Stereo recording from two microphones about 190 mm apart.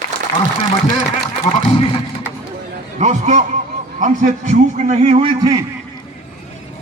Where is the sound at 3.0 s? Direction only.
40° right (ahead or behind).